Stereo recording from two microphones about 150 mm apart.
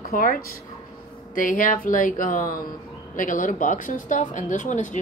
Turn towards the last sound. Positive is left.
turn(degrees=55)  # may be behind; listen again after turning